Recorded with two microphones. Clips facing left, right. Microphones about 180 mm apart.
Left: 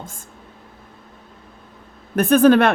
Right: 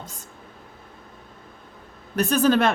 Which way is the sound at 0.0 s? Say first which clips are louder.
Left 3 dB; 50° left (ahead or behind).